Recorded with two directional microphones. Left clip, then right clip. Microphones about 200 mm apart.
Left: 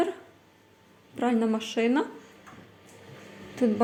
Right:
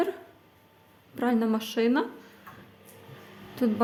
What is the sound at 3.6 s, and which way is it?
Speech, 5° right (ahead or behind).